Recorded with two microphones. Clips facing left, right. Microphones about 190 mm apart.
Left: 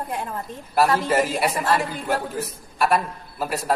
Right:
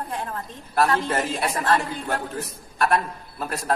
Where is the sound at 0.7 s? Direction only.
5° left (ahead or behind).